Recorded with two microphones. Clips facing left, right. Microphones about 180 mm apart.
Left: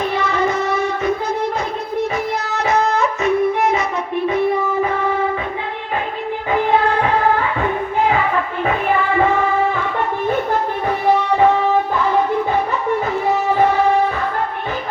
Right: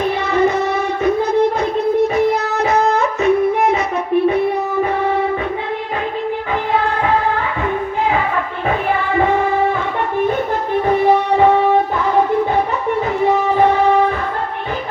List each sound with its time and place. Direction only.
0.2 s child singing: 60° right (ahead or behind)
2.1 s music: 60° right (ahead or behind)